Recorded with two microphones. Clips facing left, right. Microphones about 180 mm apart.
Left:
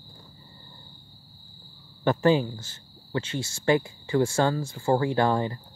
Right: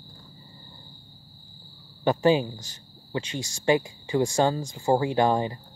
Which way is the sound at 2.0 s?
15° right (ahead or behind).